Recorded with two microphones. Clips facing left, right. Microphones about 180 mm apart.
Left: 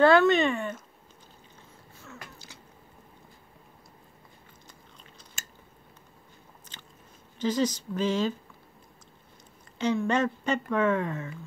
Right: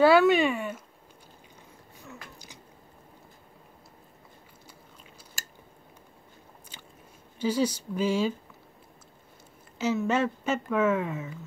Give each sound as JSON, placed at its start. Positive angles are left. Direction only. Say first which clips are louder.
{"t": 0.0, "sound": "speech", "louder": "even", "side_deg": -10}
{"t": 2.0, "sound": "a sound", "louder": "even", "side_deg": -15}
{"t": 6.7, "sound": "biting", "louder": "even", "side_deg": -10}
{"t": 7.3, "sound": "speech", "louder": "even", "side_deg": -10}
{"t": 9.8, "sound": "speech", "louder": "even", "side_deg": -5}